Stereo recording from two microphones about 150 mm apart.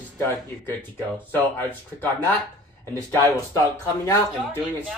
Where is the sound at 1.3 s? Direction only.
15° left (ahead or behind).